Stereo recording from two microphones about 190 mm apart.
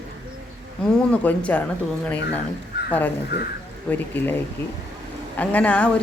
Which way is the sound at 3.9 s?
10° left (ahead or behind).